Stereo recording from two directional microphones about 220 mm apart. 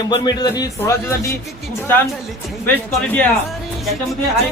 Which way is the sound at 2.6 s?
5° left (ahead or behind).